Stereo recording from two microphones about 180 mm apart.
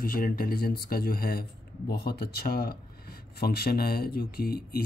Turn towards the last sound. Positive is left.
turn(degrees=60)  # may be behind; listen again after turning